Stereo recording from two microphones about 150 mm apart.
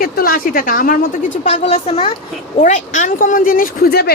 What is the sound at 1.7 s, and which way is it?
Speech, 40° left (ahead or behind).